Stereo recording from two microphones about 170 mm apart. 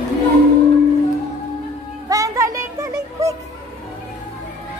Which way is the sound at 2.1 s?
20° right (ahead or behind).